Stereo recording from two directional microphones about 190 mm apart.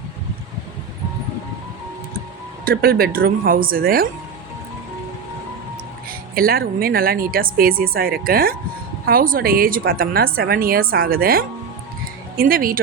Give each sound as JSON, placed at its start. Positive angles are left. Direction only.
{"t": 2.6, "sound": "speech", "side_deg": -50}
{"t": 6.1, "sound": "speech", "side_deg": -50}